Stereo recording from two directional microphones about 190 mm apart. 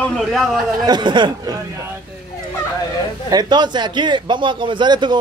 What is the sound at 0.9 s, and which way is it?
Speech, 25° right (ahead or behind).